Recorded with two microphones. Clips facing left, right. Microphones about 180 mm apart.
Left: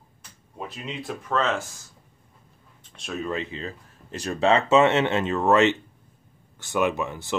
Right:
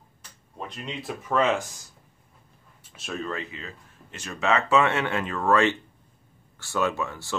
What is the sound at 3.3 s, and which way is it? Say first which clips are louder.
Speech: left 4 dB; 25° left (ahead or behind).